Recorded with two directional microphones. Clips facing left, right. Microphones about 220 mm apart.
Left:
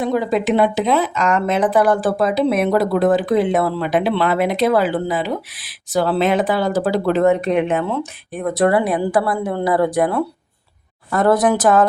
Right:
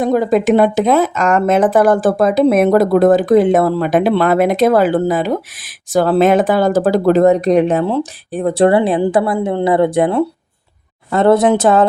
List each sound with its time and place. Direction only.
0.0 s a woman's voice: 45° right (ahead or behind); by 11.9 s 25° right (ahead or behind)